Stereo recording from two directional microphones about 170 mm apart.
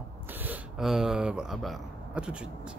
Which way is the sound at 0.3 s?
10° right (ahead or behind).